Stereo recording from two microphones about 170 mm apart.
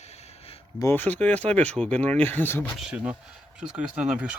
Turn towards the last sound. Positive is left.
turn(degrees=-5)  # may be behind; listen again after turning